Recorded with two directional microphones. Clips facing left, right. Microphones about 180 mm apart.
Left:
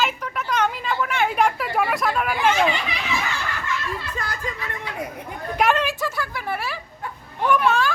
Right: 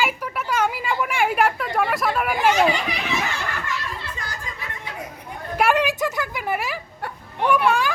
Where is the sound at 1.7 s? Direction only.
Centre (ahead or behind).